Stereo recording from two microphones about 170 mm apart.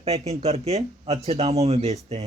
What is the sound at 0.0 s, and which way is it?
Speech, 40° right (ahead or behind).